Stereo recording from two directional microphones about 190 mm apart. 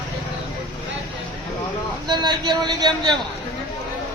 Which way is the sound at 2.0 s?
25° right (ahead or behind).